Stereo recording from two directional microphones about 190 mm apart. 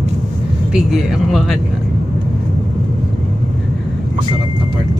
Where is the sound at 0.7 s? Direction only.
5° right (ahead or behind).